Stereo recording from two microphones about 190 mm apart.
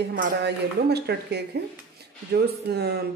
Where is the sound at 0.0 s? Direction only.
55° right (ahead or behind).